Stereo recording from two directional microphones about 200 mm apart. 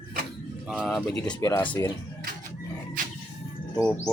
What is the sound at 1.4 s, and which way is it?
Speech, 15° left (ahead or behind).